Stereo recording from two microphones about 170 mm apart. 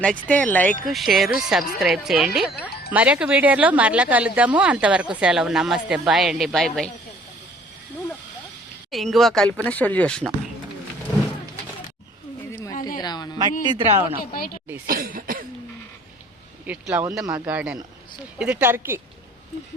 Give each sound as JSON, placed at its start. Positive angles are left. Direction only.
{"t": 0.0, "sound": "a woman's voice", "side_deg": 5}
{"t": 8.9, "sound": "a woman's voice", "side_deg": 0}
{"t": 13.0, "sound": "a sound", "side_deg": 25}
{"t": 13.4, "sound": "speech", "side_deg": -25}
{"t": 14.3, "sound": "speech", "side_deg": 60}
{"t": 14.8, "sound": "cough", "side_deg": -55}
{"t": 16.6, "sound": "speech", "side_deg": -10}
{"t": 17.4, "sound": "speech", "side_deg": -10}